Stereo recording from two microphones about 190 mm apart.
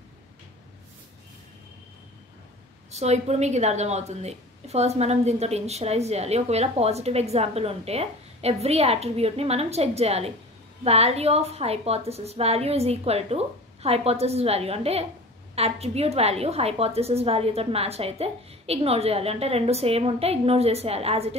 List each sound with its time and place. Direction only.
2.9 s a woman's voice: 35° right (ahead or behind)